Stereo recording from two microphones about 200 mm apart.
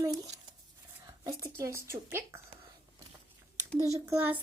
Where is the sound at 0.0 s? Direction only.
15° right (ahead or behind).